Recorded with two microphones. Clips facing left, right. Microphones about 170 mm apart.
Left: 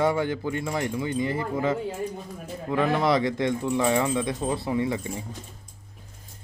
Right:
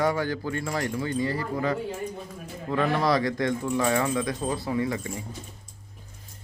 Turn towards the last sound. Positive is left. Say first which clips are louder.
# left 1 dB
turn(degrees=25)  # may be behind; listen again after turning